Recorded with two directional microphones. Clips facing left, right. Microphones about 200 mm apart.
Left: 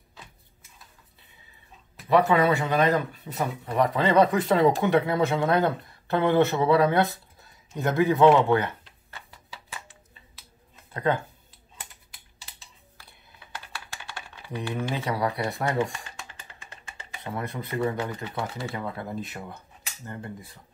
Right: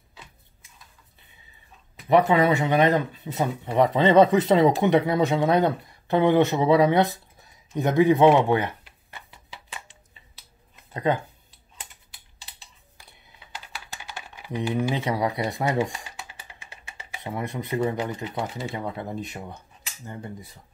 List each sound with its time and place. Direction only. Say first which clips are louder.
2.0 s speech: right 2 dB; 20° right (ahead or behind)
7.7 s a sound: right 4 dB; 15° right (ahead or behind)
10.9 s speech: right 1 dB; 15° right (ahead or behind)
14.1 s speech: right 4 dB; 15° right (ahead or behind)